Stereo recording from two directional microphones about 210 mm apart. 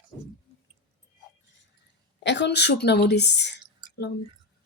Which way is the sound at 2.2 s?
55° left (ahead or behind).